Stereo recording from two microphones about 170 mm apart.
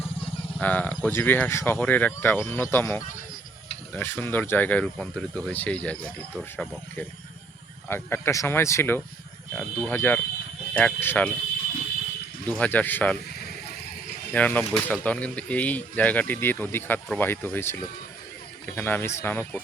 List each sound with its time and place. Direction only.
0.6 s speech: 10° left (ahead or behind)
7.9 s speech: 15° left (ahead or behind)
12.5 s speech: 10° left (ahead or behind)
13.4 s a sound: 65° left (ahead or behind)
14.3 s speech: 10° left (ahead or behind)